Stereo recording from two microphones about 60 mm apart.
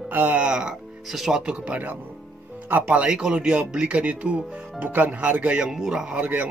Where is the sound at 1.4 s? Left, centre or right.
Right.